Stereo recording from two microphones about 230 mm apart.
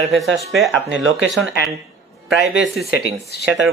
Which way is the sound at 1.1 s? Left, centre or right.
Right.